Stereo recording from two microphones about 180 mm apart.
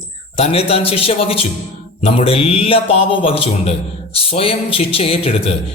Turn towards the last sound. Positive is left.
turn(degrees=35)  # may be behind; listen again after turning